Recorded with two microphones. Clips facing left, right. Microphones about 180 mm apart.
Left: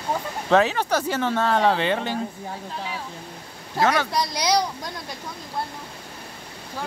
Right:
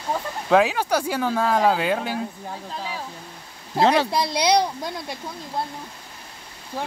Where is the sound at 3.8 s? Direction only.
30° right (ahead or behind).